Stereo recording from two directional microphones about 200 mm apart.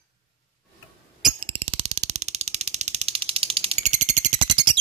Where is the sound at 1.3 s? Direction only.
30° right (ahead or behind).